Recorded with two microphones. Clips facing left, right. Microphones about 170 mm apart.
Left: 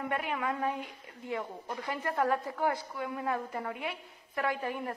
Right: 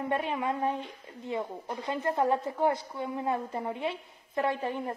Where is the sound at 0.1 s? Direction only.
25° right (ahead or behind).